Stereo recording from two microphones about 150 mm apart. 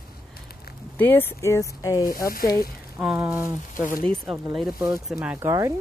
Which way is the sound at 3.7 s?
60° left (ahead or behind).